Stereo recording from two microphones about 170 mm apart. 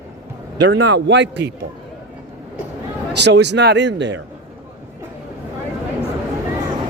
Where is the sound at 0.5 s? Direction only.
90° right.